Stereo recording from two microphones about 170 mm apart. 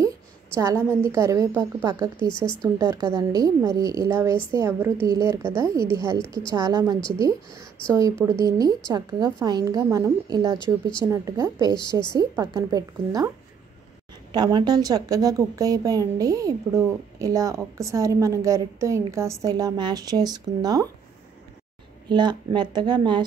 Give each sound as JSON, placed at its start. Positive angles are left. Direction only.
{"t": 0.6, "sound": "a woman's voice", "side_deg": -15}
{"t": 2.1, "sound": "speech", "side_deg": 25}
{"t": 2.6, "sound": "a woman's voice", "side_deg": -15}
{"t": 8.3, "sound": "speech", "side_deg": -20}
{"t": 10.6, "sound": "speech", "side_deg": 30}
{"t": 11.1, "sound": "a woman's voice", "side_deg": -15}
{"t": 14.3, "sound": "speech", "side_deg": -25}
{"t": 22.1, "sound": "speech", "side_deg": -25}